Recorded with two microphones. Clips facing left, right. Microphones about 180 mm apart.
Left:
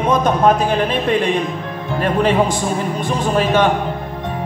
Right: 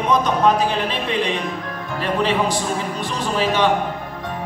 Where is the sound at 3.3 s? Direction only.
50° left (ahead or behind).